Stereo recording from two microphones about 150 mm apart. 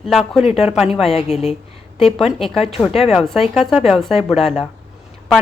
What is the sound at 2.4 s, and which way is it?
A woman's voice, centre (ahead or behind).